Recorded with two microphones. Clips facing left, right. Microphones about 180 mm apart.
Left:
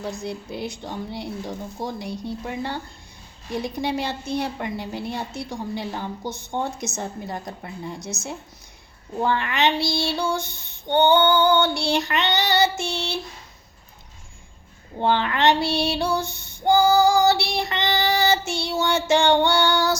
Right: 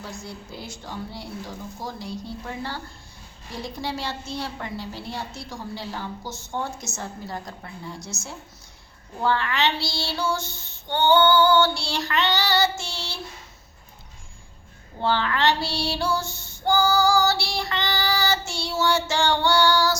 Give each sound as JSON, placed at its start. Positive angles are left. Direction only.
{"t": 0.0, "sound": "speech", "side_deg": 20}
{"t": 6.2, "sound": "child singing", "side_deg": 60}
{"t": 6.5, "sound": "speech", "side_deg": 20}
{"t": 9.2, "sound": "speech", "side_deg": 20}
{"t": 10.2, "sound": "a sound", "side_deg": 15}
{"t": 10.4, "sound": "child singing", "side_deg": 60}
{"t": 10.8, "sound": "speech", "side_deg": 20}
{"t": 15.0, "sound": "speech", "side_deg": 20}
{"t": 16.6, "sound": "child singing", "side_deg": 20}